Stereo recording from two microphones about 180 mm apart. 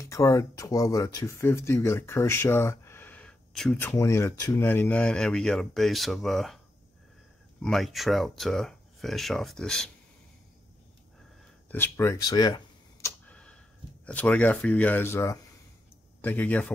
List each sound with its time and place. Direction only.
0.0 s speech: 15° left (ahead or behind)
3.7 s speech: 15° left (ahead or behind)
7.6 s speech: centre (ahead or behind)
11.7 s speech: 15° left (ahead or behind)
13.3 s a sound: 5° left (ahead or behind)
14.0 s speech: 10° left (ahead or behind)